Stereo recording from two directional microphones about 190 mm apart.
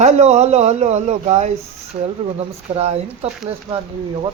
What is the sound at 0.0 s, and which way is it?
Speech, 35° right (ahead or behind).